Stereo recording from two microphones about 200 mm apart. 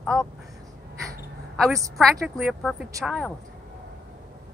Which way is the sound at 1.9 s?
Centre (ahead or behind).